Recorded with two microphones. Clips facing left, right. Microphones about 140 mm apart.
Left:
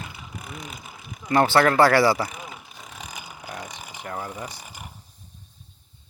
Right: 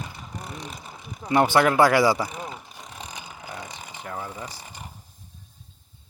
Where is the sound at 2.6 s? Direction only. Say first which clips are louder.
Right 1 dB; 5° left (ahead or behind).